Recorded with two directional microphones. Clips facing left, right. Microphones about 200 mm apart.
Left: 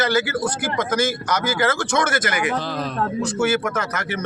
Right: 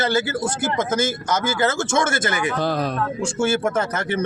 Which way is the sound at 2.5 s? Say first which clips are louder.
Right 3 dB; 50° right (ahead or behind).